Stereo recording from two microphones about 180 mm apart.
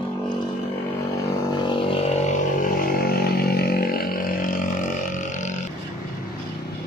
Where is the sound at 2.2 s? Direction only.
50° left (ahead or behind).